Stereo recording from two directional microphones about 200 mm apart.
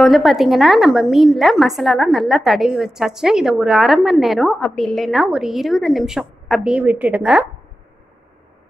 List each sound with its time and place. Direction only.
0.0 s a woman's voice: centre (ahead or behind)